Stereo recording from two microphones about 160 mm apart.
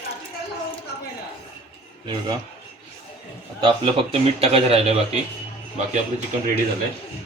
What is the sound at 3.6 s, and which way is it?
A man's voice, 35° right (ahead or behind).